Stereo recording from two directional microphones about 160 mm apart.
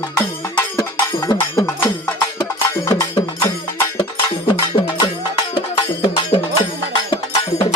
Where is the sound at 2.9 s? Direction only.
20° left (ahead or behind).